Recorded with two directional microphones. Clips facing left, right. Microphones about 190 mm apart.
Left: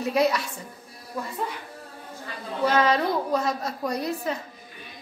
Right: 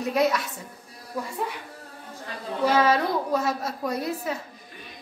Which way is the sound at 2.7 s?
5° right (ahead or behind).